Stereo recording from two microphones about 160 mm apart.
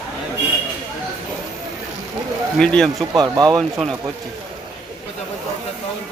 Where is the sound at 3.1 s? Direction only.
25° right (ahead or behind).